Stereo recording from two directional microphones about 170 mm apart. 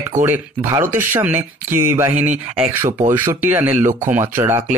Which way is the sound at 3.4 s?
10° right (ahead or behind).